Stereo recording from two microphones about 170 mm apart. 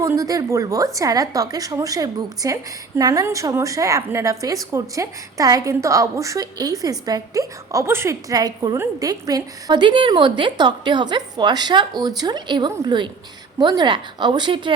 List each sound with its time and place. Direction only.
0.0 s a woman's voice: 20° right (ahead or behind)